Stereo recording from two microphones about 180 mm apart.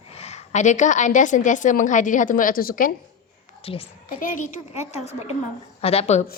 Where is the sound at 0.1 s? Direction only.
35° left (ahead or behind).